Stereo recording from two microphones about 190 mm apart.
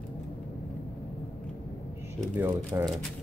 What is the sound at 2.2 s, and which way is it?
Speech, 10° right (ahead or behind).